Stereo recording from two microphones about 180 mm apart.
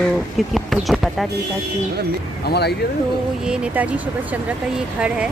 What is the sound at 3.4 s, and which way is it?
A woman's voice, 5° right (ahead or behind).